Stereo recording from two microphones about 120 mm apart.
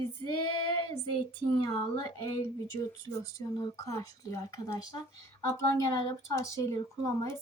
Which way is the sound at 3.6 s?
30° left (ahead or behind).